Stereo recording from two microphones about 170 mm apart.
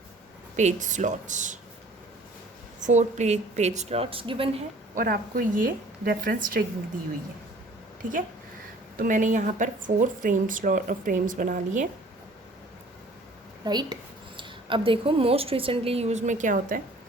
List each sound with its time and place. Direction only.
0.5 s speech: 45° right (ahead or behind)
2.8 s a woman's voice: 45° right (ahead or behind)
4.9 s a woman's voice: 55° right (ahead or behind)
9.0 s speech: 50° right (ahead or behind)
13.7 s a woman's voice: 25° right (ahead or behind); by 16.8 s 50° right (ahead or behind)